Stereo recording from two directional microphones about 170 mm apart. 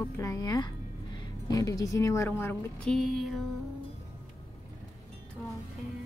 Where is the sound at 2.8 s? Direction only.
Centre (ahead or behind).